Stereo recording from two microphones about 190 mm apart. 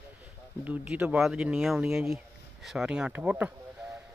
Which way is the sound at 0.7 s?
5° right (ahead or behind).